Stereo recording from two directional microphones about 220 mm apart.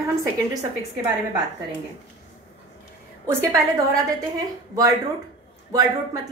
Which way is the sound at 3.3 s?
15° right (ahead or behind).